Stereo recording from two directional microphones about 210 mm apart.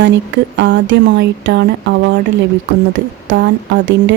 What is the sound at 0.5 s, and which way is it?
Speech, 60° right (ahead or behind).